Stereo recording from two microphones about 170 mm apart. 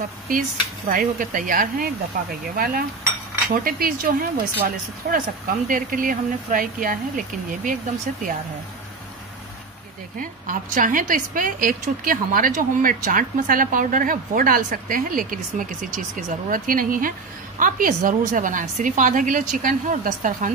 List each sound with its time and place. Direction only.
0.8 s a woman's voice: 55° right (ahead or behind)
10.4 s a woman's voice: 50° right (ahead or behind)